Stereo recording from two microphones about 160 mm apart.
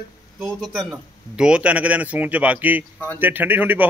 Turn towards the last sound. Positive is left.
turn(degrees=-10)  # may be behind; listen again after turning